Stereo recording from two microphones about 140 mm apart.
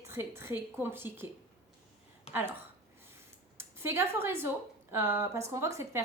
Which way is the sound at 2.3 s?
45° left (ahead or behind).